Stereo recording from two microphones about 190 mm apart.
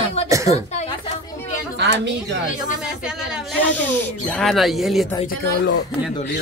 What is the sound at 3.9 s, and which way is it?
Speech, centre (ahead or behind).